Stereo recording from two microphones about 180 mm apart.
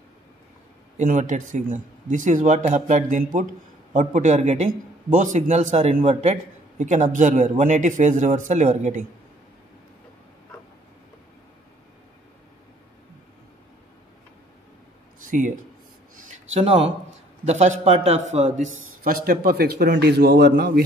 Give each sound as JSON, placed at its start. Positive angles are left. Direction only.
{"t": 0.9, "sound": "a man's voice", "side_deg": -45}
{"t": 15.2, "sound": "a man's voice", "side_deg": -45}
{"t": 16.3, "sound": "a sound", "side_deg": -35}
{"t": 17.5, "sound": "a man's voice", "side_deg": -40}
{"t": 19.0, "sound": "a man's voice", "side_deg": -55}